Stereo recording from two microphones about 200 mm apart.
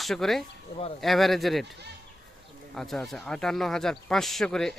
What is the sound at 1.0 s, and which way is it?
Speech, centre (ahead or behind).